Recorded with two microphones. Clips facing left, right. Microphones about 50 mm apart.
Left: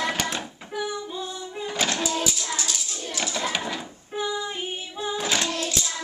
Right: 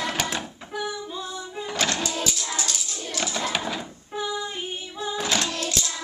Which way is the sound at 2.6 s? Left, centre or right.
Centre.